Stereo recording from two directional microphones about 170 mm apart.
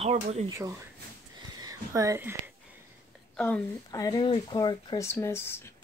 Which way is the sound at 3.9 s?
20° left (ahead or behind).